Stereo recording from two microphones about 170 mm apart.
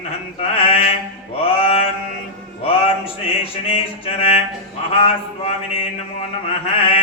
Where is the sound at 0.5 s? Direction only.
35° left (ahead or behind).